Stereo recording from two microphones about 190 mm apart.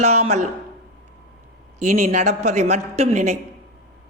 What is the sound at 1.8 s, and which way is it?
A man's voice, 40° right (ahead or behind).